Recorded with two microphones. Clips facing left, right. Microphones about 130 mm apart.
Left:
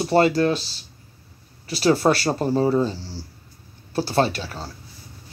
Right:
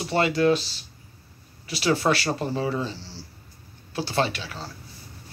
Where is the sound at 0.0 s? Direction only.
40° left (ahead or behind).